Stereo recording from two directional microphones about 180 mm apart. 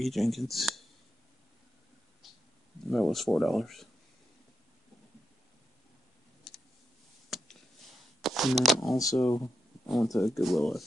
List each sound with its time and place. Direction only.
0.0 s speech: centre (ahead or behind)
2.2 s a sound: centre (ahead or behind)
2.9 s speech: centre (ahead or behind)
7.2 s a sound: centre (ahead or behind)
8.9 s speech: 20° left (ahead or behind)
9.4 s speech: centre (ahead or behind)